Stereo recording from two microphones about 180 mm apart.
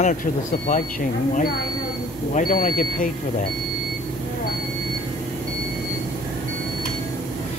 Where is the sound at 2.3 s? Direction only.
50° left (ahead or behind).